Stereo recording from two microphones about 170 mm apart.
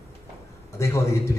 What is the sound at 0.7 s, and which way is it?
Speech, 15° left (ahead or behind).